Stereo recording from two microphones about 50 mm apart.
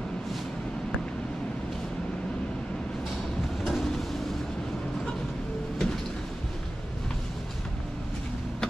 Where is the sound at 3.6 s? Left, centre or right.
Centre.